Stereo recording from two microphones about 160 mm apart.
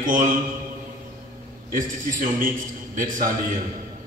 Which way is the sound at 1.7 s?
55° right (ahead or behind).